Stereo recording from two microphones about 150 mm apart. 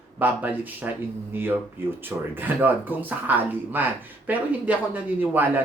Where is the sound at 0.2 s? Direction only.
10° right (ahead or behind).